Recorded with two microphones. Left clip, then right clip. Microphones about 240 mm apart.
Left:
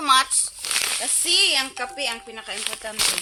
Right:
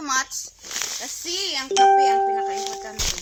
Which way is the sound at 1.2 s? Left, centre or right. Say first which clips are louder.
Left 8 dB; centre.